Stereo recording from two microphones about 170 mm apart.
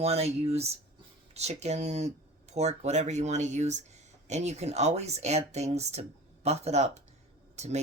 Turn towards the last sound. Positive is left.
turn(degrees=-40)  # may be behind; listen again after turning